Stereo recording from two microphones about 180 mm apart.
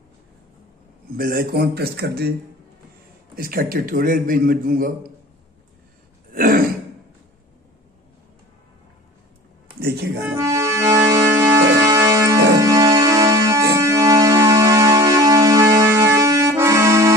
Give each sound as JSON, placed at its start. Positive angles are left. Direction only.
{"t": 1.1, "sound": "a man's voice", "side_deg": -55}
{"t": 3.3, "sound": "a man's voice", "side_deg": -55}
{"t": 6.3, "sound": "throat clearing", "side_deg": -50}
{"t": 9.8, "sound": "music", "side_deg": -60}
{"t": 10.3, "sound": "music", "side_deg": -15}